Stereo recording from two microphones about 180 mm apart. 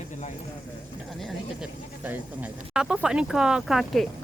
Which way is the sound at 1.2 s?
Centre (ahead or behind).